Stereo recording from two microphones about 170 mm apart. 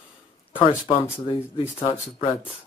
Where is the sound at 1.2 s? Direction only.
30° left (ahead or behind).